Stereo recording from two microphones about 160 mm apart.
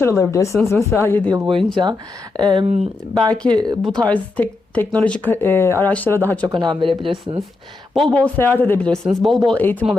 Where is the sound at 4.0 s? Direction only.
10° left (ahead or behind).